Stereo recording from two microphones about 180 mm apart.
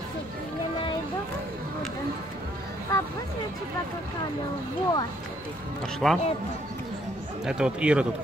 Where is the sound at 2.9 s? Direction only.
15° left (ahead or behind).